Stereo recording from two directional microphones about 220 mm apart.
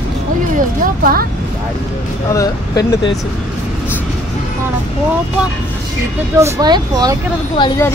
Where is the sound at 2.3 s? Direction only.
15° left (ahead or behind).